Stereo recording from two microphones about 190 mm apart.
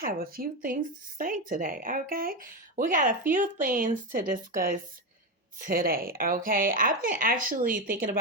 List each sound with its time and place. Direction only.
0.0 s speech: 50° right (ahead or behind)